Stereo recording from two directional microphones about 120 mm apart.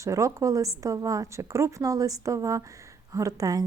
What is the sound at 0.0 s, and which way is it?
A woman's voice, 25° right (ahead or behind).